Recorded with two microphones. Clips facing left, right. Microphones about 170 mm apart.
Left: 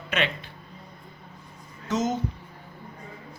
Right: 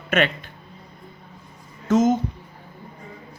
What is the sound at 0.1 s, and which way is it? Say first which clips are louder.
Speech: right 7 dB; 50° right (ahead or behind).